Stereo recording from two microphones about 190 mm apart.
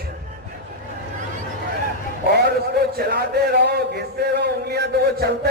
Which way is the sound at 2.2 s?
60° right (ahead or behind).